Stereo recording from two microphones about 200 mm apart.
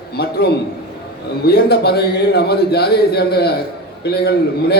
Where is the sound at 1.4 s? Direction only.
55° left (ahead or behind).